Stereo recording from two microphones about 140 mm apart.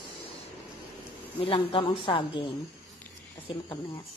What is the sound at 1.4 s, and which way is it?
A woman's voice, 40° left (ahead or behind).